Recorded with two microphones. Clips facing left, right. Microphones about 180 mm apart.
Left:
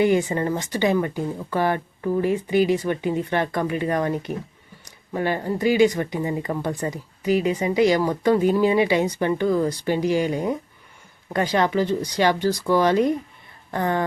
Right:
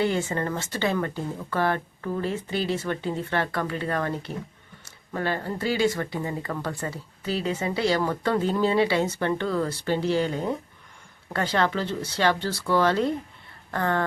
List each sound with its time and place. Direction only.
0.0 s speech: 15° left (ahead or behind)